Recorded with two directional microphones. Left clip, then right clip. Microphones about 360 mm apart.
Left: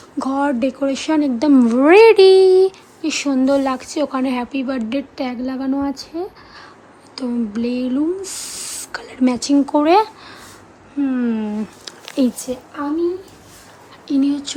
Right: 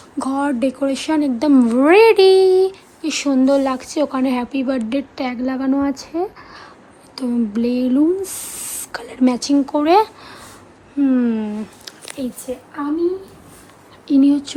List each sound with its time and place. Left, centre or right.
0.2 s speech: centre
12.2 s speech: centre
14.1 s speech: centre